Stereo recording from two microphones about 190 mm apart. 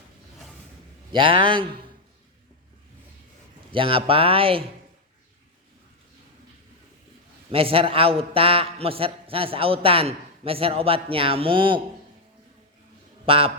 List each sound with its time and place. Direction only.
1.1 s a man's voice: 25° right (ahead or behind)
3.7 s a man's voice: 30° right (ahead or behind)
7.5 s a man's voice: 30° right (ahead or behind)
13.2 s a man's voice: 30° right (ahead or behind)